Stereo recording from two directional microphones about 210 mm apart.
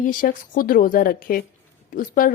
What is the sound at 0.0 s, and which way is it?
Speech, 40° left (ahead or behind).